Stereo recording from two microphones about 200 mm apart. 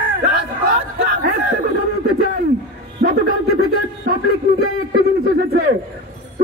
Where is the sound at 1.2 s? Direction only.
50° right (ahead or behind).